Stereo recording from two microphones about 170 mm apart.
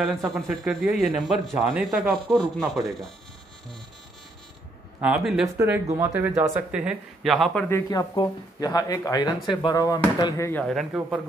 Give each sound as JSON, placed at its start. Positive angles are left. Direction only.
{"t": 0.0, "sound": "a man's voice", "side_deg": 0}
{"t": 5.0, "sound": "a man's voice", "side_deg": 0}
{"t": 5.9, "sound": "speech", "side_deg": -15}
{"t": 7.3, "sound": "a man's voice", "side_deg": 5}
{"t": 7.7, "sound": "speech", "side_deg": 20}
{"t": 10.6, "sound": "a man's voice", "side_deg": 0}